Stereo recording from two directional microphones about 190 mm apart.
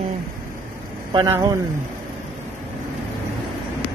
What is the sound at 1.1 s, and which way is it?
Speech, 20° right (ahead or behind).